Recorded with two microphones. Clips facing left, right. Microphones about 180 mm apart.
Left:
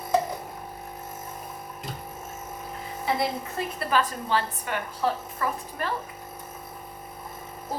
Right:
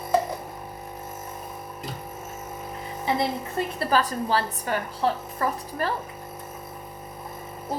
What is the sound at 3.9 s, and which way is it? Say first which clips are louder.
A woman's voice: right 1 dB; 40° right (ahead or behind).